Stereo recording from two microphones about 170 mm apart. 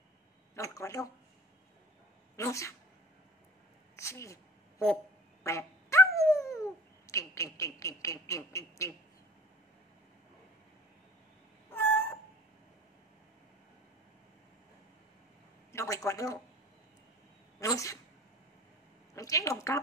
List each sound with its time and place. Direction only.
0.6 s speech: 20° left (ahead or behind)
2.3 s speech: 20° left (ahead or behind)
3.9 s a woman's voice: 15° left (ahead or behind)
5.4 s cat: 15° left (ahead or behind)
11.7 s cat: 10° left (ahead or behind)
15.7 s speech: 15° left (ahead or behind)
17.6 s a woman's voice: 20° left (ahead or behind)
19.1 s speech: 20° left (ahead or behind)